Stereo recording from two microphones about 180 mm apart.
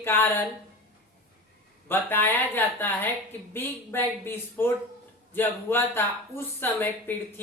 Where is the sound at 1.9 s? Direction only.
10° left (ahead or behind).